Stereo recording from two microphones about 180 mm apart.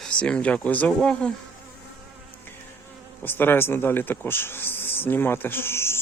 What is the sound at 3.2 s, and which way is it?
Speech, 10° left (ahead or behind).